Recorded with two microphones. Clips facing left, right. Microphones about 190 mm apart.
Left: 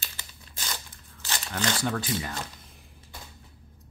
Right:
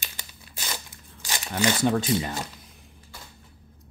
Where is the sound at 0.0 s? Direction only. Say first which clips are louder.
Right 2 dB; 10° right (ahead or behind).